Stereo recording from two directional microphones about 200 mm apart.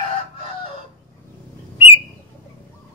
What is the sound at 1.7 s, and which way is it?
Bird, 30° left (ahead or behind).